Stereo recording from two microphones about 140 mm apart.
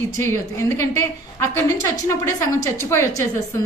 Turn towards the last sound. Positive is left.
turn(degrees=20)  # may be behind; listen again after turning